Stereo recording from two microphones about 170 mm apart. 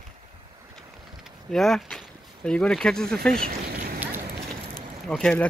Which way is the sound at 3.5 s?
60° right (ahead or behind).